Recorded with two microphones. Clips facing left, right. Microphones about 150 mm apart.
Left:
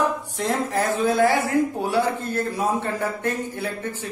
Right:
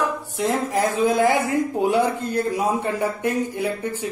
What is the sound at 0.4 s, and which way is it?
A man's voice, 10° right (ahead or behind).